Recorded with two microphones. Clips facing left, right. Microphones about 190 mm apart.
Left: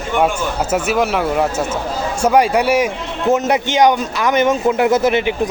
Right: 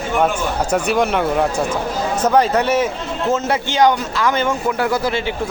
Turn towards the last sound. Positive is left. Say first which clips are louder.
# left 5 dB
turn(degrees=20)  # may be behind; listen again after turning